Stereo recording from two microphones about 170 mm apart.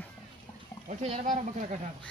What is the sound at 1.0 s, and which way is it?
Speech, 40° right (ahead or behind).